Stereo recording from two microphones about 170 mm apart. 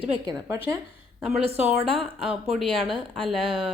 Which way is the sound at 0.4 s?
15° right (ahead or behind).